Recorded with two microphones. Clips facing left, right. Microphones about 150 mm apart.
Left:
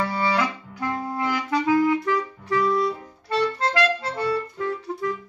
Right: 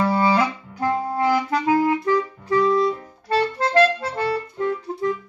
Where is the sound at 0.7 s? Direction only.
40° right (ahead or behind).